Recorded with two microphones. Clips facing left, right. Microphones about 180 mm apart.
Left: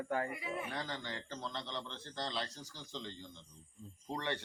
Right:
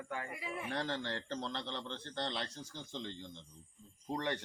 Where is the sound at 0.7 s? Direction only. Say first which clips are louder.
Right 4 dB; 70° right (ahead or behind).